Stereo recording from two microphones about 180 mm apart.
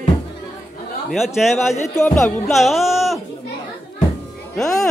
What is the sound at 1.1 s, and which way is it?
A man's voice, centre (ahead or behind).